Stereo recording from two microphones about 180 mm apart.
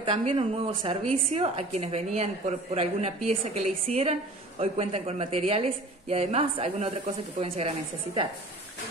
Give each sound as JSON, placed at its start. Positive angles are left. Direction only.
{"t": 0.0, "sound": "a woman's voice", "side_deg": -30}